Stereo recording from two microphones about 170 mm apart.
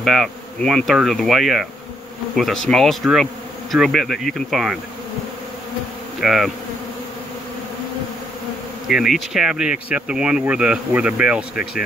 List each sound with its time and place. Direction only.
0.0 s speech: centre (ahead or behind)
6.2 s speech: centre (ahead or behind)
8.8 s speech: centre (ahead or behind)